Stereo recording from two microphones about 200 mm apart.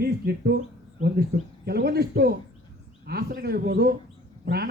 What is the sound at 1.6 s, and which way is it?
A man's voice, 50° right (ahead or behind).